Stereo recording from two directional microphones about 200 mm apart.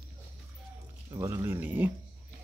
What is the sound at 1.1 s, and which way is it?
Speech, 15° right (ahead or behind).